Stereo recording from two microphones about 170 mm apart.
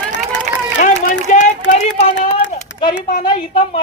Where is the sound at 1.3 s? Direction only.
45° left (ahead or behind).